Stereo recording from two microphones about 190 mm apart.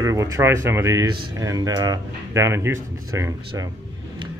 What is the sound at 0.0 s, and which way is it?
Speech, 15° right (ahead or behind).